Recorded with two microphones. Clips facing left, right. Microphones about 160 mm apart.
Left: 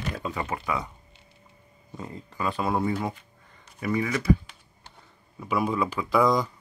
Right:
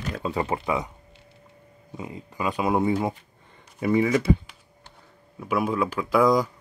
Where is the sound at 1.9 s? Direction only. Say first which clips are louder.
Right 2 dB; 10° right (ahead or behind).